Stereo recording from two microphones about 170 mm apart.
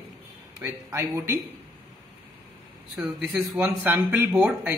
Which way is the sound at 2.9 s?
Centre (ahead or behind).